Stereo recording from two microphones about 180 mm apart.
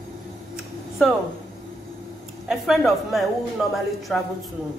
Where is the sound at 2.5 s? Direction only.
Centre (ahead or behind).